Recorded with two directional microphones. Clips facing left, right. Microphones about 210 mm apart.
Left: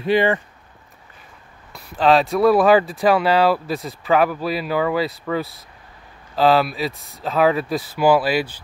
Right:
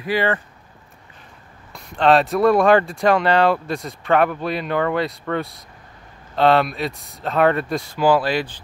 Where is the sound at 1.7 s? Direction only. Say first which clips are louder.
Even; centre (ahead or behind).